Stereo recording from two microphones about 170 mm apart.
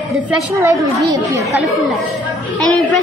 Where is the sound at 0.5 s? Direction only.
20° right (ahead or behind).